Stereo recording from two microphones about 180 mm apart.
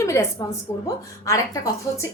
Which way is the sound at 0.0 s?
15° left (ahead or behind).